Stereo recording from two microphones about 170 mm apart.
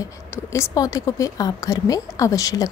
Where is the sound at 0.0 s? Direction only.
15° left (ahead or behind).